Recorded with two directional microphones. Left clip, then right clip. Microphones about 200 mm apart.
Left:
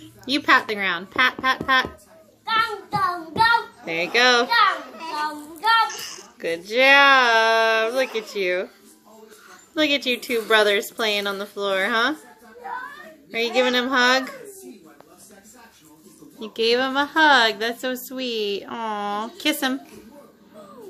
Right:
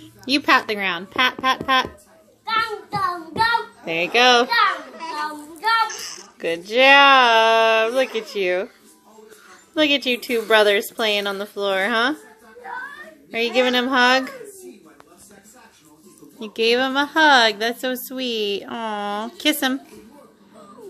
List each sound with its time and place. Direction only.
0.2 s a woman's voice: 25° right (ahead or behind)
2.4 s child singing: 5° right (ahead or behind)
4.2 s a woman's voice: 25° right (ahead or behind)
4.5 s a sound: centre (ahead or behind)
6.4 s a woman's voice: 25° right (ahead or behind)
9.8 s a woman's voice: 25° right (ahead or behind)
13.3 s a woman's voice: 25° right (ahead or behind)
16.3 s speech: 30° right (ahead or behind)